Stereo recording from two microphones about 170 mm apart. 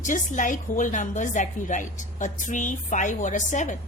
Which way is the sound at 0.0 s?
45° left (ahead or behind).